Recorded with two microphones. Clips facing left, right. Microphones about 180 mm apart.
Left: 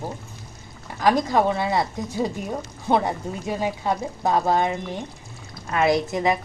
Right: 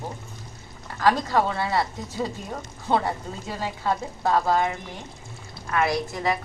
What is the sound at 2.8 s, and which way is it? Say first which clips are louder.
A woman's voice: left 2 dB; 15° left (ahead or behind).